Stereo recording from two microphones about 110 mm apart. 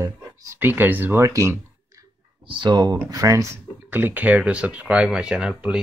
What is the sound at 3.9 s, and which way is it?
Speech, 15° right (ahead or behind).